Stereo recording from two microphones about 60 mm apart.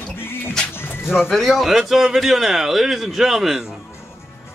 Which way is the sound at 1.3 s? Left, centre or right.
Centre.